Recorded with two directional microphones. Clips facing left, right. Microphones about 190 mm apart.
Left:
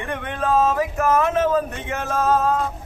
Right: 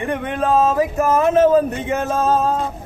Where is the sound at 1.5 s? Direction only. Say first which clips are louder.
Right 6 dB; 20° right (ahead or behind).